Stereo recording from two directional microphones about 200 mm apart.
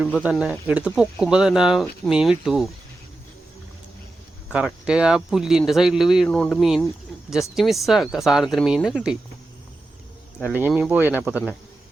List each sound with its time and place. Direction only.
0.0 s speech: 5° right (ahead or behind)
4.5 s speech: 5° right (ahead or behind)
10.7 s speech: 5° right (ahead or behind)